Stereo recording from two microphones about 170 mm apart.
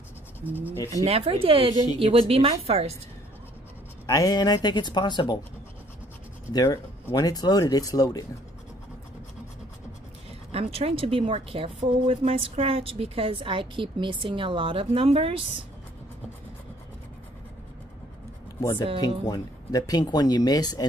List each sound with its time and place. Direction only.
0.4 s speech: 10° right (ahead or behind)
1.0 s speech: 35° right (ahead or behind)
4.0 s speech: 20° left (ahead or behind)
6.5 s speech: 25° left (ahead or behind)
10.5 s speech: 35° right (ahead or behind)
18.6 s speech: 20° left (ahead or behind)